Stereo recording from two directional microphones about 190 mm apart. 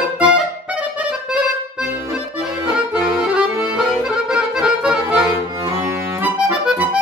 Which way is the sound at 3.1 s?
5° right (ahead or behind).